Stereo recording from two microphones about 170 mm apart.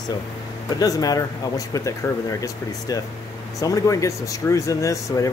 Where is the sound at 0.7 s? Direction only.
20° left (ahead or behind).